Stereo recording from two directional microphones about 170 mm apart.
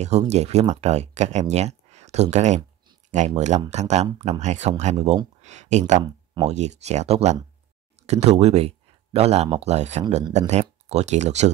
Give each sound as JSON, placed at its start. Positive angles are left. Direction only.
{"t": 0.0, "sound": "speech", "side_deg": -40}